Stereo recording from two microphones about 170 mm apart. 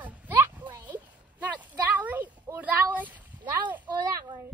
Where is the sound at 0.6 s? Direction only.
25° right (ahead or behind).